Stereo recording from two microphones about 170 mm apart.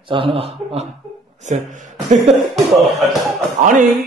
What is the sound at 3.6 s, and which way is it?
Speech, 50° right (ahead or behind).